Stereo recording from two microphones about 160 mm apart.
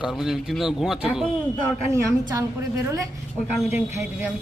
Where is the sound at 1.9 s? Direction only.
20° right (ahead or behind).